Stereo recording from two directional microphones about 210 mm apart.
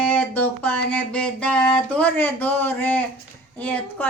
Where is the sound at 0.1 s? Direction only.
5° left (ahead or behind).